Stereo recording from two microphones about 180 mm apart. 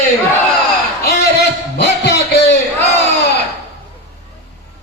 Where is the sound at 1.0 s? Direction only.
65° left (ahead or behind).